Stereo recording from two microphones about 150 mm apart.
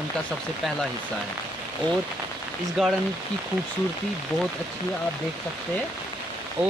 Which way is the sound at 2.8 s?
Centre (ahead or behind).